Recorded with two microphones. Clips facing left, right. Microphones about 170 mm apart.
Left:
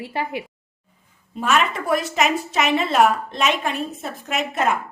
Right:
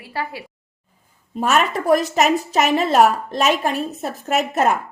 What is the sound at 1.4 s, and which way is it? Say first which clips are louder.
A woman's voice: right 2 dB; 40° right (ahead or behind).